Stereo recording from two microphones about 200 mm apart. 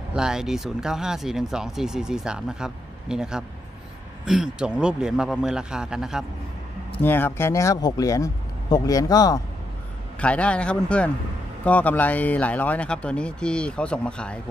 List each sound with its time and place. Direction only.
0.1 s speech: 5° right (ahead or behind)
7.0 s speech: 10° left (ahead or behind)
10.2 s speech: 5° left (ahead or behind)